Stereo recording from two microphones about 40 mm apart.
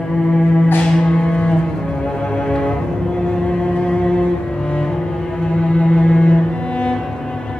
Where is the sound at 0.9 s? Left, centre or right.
Centre.